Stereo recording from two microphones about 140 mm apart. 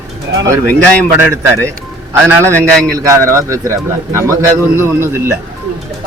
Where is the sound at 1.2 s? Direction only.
20° right (ahead or behind).